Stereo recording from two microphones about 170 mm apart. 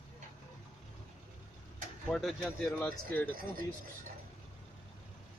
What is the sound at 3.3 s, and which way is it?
Speech, 60° right (ahead or behind).